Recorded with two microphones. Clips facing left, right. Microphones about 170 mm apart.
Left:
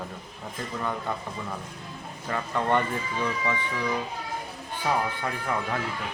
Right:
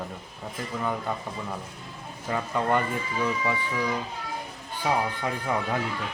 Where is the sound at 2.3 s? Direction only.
10° right (ahead or behind).